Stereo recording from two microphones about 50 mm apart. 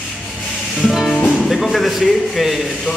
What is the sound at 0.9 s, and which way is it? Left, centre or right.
Music, centre.